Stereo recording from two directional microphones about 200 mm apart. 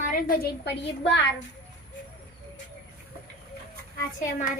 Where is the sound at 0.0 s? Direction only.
45° left (ahead or behind); by 1.2 s 60° left (ahead or behind).